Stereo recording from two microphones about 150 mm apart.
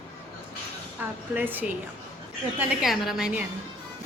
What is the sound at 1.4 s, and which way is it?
Speech, 10° right (ahead or behind).